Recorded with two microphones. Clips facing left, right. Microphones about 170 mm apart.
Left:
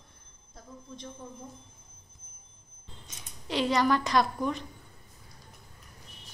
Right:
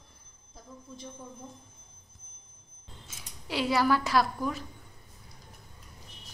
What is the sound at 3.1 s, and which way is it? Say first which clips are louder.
A woman's voice: left 2 dB; 5° right (ahead or behind).